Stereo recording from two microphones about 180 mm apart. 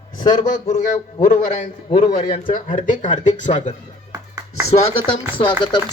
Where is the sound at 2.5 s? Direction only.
50° left (ahead or behind).